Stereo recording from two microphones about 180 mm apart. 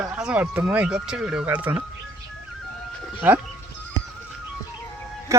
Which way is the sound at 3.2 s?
10° right (ahead or behind).